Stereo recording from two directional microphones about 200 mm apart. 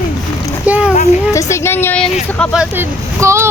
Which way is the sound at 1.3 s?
15° left (ahead or behind).